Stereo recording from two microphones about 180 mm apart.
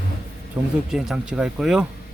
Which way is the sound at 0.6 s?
5° right (ahead or behind).